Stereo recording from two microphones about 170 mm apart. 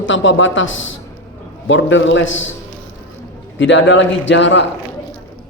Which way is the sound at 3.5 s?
90° left.